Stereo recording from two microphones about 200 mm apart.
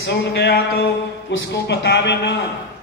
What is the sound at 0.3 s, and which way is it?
Speech, 60° left (ahead or behind).